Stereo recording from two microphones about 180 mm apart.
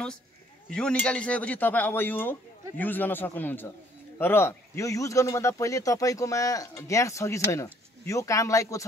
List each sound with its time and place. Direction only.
0.7 s speech: 5° left (ahead or behind)